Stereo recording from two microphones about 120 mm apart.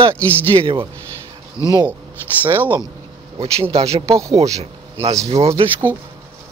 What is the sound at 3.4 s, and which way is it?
Speech, 55° right (ahead or behind).